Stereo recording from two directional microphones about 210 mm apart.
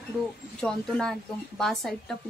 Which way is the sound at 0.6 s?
Centre (ahead or behind).